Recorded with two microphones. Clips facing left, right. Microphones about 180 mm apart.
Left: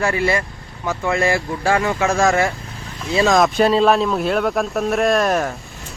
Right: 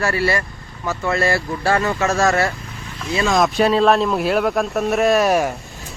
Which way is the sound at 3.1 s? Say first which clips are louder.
Left 3 dB; 40° left (ahead or behind).